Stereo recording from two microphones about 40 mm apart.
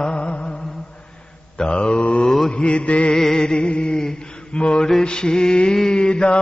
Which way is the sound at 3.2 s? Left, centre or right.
Centre.